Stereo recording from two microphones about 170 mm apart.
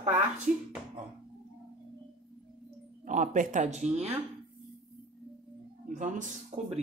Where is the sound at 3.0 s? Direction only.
50° right (ahead or behind).